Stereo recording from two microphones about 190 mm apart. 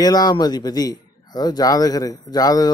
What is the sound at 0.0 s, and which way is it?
Speech, 20° left (ahead or behind).